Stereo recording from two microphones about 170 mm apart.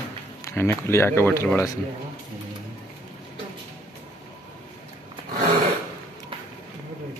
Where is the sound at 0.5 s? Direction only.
15° left (ahead or behind).